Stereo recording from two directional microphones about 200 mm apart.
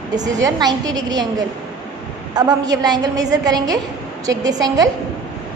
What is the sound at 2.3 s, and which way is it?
A woman's voice, 20° right (ahead or behind).